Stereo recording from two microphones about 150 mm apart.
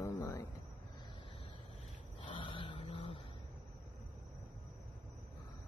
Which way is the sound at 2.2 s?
35° left (ahead or behind).